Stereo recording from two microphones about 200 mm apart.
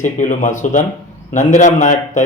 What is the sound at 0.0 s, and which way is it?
Speech, 40° left (ahead or behind).